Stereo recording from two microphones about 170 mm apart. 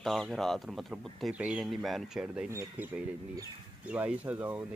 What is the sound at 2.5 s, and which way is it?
Speech, 15° right (ahead or behind).